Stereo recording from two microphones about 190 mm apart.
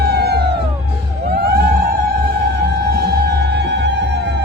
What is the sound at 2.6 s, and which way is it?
Music, 60° right (ahead or behind).